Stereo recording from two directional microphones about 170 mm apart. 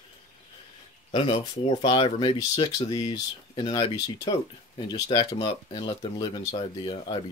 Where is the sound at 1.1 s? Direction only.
30° left (ahead or behind).